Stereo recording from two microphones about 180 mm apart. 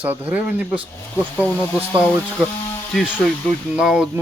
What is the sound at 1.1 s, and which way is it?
Speech, 10° left (ahead or behind).